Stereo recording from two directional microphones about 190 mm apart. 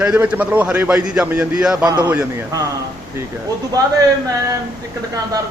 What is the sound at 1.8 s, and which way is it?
Speech, 20° right (ahead or behind).